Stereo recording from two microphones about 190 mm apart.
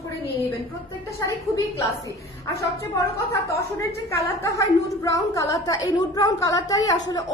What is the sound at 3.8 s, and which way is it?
A woman's voice, 15° left (ahead or behind).